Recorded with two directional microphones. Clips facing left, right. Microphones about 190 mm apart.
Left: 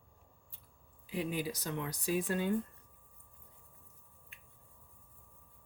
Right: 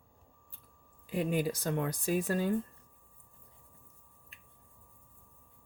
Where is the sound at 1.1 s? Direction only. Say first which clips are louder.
Right 5 dB; 50° right (ahead or behind).